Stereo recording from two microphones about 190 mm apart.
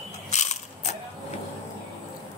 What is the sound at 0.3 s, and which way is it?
Mechanisms, 35° left (ahead or behind).